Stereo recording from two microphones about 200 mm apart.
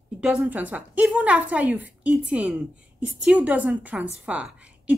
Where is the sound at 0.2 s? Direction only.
5° right (ahead or behind).